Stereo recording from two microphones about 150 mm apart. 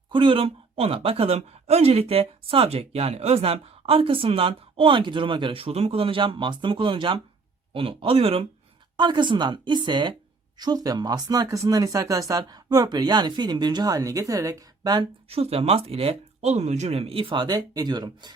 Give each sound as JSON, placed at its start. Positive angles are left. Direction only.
{"t": 0.1, "sound": "speech", "side_deg": -35}
{"t": 15.3, "sound": "speech", "side_deg": -40}